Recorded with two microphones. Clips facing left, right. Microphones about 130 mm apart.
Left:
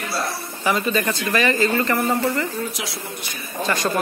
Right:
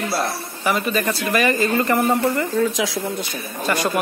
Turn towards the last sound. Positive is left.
turn(degrees=-10)  # may be behind; listen again after turning